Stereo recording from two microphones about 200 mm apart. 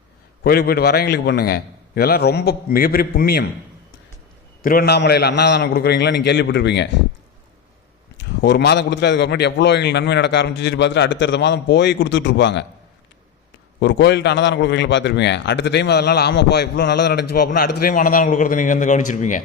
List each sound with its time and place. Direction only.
0.4 s a man's voice: 50° left (ahead or behind)
4.6 s a man's voice: 50° left (ahead or behind)
8.2 s a man's voice: 60° left (ahead or behind)
13.7 s a man's voice: 60° left (ahead or behind); by 19.4 s 40° left (ahead or behind)